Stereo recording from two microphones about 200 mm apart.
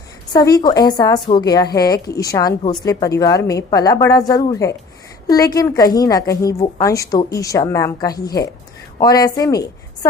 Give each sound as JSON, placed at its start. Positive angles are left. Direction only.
{"t": 0.3, "sound": "a woman's voice", "side_deg": 20}